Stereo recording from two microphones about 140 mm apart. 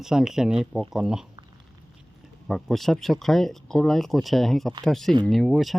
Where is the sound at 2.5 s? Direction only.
Centre (ahead or behind).